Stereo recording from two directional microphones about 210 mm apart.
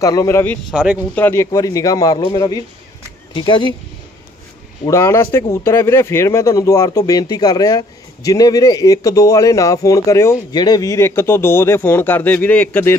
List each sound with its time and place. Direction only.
0.0 s speech: 15° left (ahead or behind)
4.8 s speech: 15° left (ahead or behind)